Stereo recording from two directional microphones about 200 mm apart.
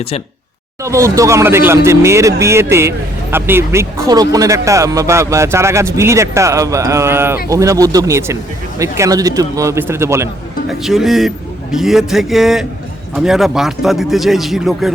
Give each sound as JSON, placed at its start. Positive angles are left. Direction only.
{"t": 0.8, "sound": "speech", "side_deg": -15}
{"t": 10.7, "sound": "speech", "side_deg": 0}